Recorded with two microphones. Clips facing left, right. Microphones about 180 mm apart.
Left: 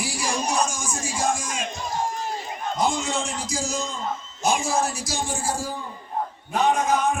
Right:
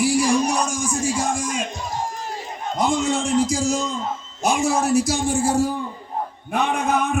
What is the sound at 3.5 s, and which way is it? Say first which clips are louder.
Speech: right 6 dB; 70° right (ahead or behind).